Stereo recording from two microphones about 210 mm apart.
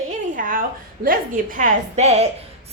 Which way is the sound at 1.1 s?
40° right (ahead or behind).